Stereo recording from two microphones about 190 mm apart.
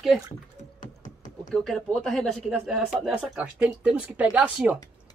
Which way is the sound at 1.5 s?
Centre (ahead or behind).